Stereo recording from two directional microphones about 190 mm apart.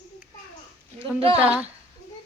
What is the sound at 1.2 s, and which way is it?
Speech, 30° right (ahead or behind).